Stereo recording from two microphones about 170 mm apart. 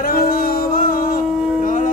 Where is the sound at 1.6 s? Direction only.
50° left (ahead or behind).